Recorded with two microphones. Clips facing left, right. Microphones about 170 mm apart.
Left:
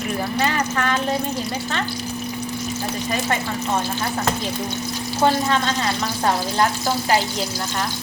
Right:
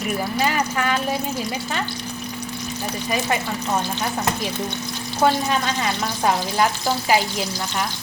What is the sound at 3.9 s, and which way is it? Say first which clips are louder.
Frying: left 1 dB; 20° right (ahead or behind).